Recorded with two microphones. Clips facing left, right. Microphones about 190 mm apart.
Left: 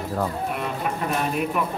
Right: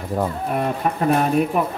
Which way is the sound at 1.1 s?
40° right (ahead or behind).